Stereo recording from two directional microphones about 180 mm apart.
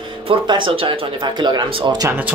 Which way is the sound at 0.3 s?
30° right (ahead or behind).